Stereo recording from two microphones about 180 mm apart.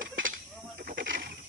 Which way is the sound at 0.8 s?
75° right (ahead or behind).